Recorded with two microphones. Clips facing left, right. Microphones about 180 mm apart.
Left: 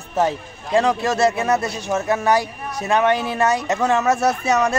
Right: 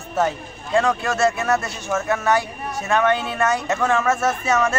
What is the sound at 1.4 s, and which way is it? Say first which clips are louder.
Speech: left 2 dB; 15° left (ahead or behind).